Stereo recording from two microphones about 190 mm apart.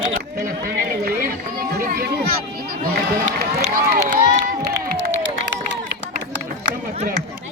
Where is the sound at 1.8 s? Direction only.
50° right (ahead or behind).